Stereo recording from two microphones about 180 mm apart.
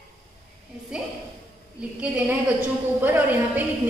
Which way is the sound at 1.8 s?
5° right (ahead or behind).